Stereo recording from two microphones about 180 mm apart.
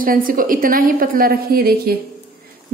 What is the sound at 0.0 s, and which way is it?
A woman's voice, 50° right (ahead or behind).